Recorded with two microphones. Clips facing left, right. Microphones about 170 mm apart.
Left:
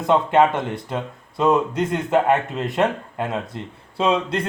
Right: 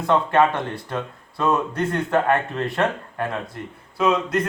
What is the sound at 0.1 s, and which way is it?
Speech, 20° left (ahead or behind).